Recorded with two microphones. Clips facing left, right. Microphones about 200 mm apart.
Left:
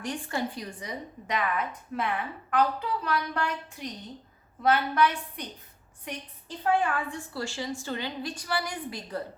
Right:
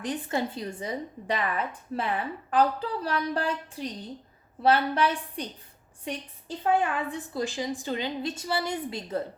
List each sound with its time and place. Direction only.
0.0 s a woman's voice: 20° right (ahead or behind)
6.6 s a woman's voice: 20° right (ahead or behind)